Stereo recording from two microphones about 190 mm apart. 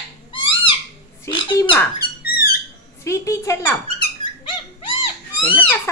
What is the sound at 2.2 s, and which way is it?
Squeak, 50° left (ahead or behind).